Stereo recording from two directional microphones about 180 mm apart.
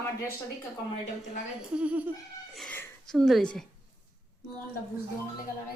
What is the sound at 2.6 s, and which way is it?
A woman's voice, 5° left (ahead or behind).